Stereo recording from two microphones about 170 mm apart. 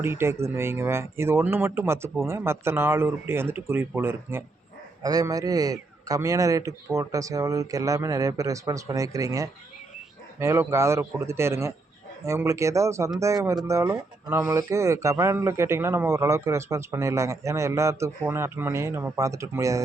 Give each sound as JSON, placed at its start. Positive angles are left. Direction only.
{"t": 0.0, "sound": "a man's voice", "side_deg": -15}